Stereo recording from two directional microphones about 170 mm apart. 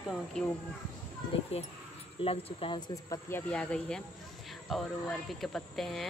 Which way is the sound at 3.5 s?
5° left (ahead or behind).